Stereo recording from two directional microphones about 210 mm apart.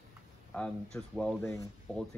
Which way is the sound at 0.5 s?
5° left (ahead or behind).